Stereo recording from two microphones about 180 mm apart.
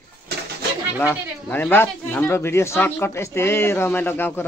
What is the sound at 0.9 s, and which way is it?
Speech, 10° left (ahead or behind).